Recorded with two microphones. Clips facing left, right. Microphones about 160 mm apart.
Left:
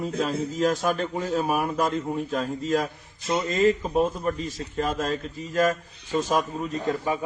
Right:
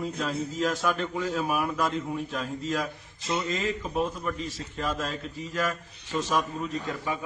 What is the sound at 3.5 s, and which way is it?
A man's voice, 45° left (ahead or behind).